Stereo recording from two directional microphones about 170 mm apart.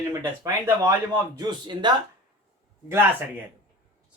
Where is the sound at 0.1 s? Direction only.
20° right (ahead or behind).